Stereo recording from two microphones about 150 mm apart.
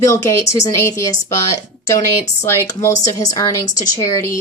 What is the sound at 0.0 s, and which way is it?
A woman's voice, 20° left (ahead or behind).